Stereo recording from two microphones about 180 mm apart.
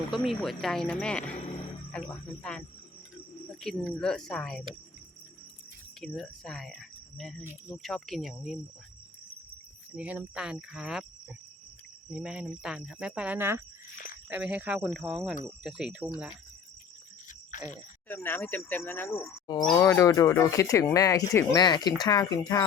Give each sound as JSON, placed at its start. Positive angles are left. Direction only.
{"t": 0.1, "sound": "speech", "side_deg": 0}
{"t": 1.4, "sound": "music", "side_deg": 35}
{"t": 1.9, "sound": "speech", "side_deg": 5}
{"t": 6.0, "sound": "speech", "side_deg": 5}
{"t": 9.9, "sound": "speech", "side_deg": -10}
{"t": 12.1, "sound": "speech", "side_deg": -5}
{"t": 17.5, "sound": "a sound", "side_deg": 45}
{"t": 18.1, "sound": "speech", "side_deg": 10}